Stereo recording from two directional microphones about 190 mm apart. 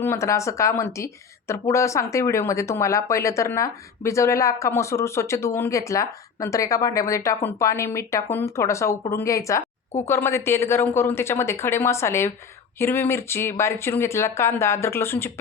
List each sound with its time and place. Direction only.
0.0 s speech: 15° left (ahead or behind)